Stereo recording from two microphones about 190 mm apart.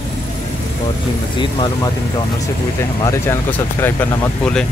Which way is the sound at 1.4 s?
25° left (ahead or behind).